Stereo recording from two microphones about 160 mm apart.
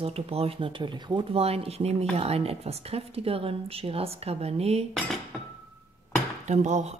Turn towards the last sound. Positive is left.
turn(degrees=-45)  # may be behind; listen again after turning